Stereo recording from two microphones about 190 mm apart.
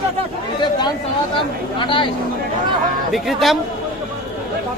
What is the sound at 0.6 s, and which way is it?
Speech, 25° left (ahead or behind).